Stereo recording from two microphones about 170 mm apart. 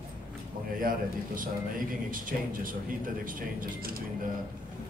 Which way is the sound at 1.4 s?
55° right (ahead or behind).